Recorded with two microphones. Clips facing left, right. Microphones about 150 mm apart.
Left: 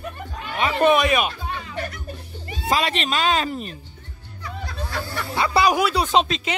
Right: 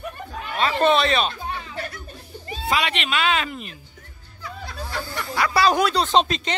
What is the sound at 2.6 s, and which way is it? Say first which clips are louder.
A woman's voice: left 2 dB; 40° left (ahead or behind).